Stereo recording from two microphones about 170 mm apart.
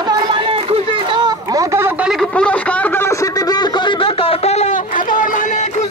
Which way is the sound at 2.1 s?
5° left (ahead or behind).